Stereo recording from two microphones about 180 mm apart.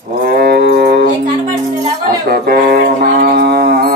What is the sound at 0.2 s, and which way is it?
Livestock, 60° right (ahead or behind).